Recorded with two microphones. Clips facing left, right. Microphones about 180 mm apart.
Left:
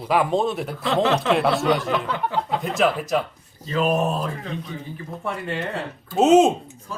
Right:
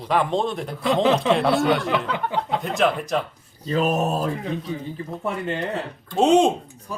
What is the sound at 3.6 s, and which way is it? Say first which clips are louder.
Speech: even; 40° right (ahead or behind).